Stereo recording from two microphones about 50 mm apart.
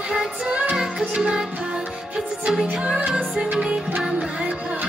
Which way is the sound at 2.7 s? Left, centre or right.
Centre.